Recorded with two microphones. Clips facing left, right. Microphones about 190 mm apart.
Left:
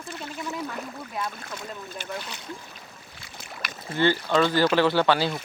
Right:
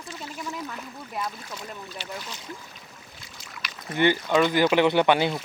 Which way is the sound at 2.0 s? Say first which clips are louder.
Left 2 dB; 60° left (ahead or behind).